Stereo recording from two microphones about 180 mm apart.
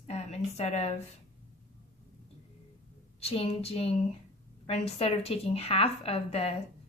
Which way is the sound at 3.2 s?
35° left (ahead or behind).